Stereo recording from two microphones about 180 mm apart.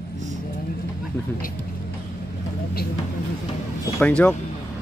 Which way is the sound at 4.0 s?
5° left (ahead or behind).